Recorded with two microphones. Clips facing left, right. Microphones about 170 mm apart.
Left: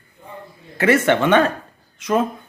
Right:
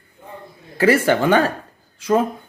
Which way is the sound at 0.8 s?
30° right (ahead or behind).